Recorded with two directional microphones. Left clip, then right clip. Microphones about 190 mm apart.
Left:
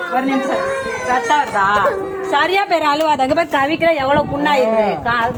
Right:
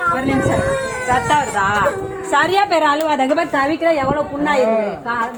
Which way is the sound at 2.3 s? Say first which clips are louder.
Right 1 dB; 15° right (ahead or behind).